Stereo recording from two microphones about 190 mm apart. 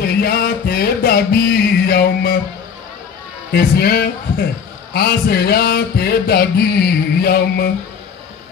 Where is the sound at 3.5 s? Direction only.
55° left (ahead or behind).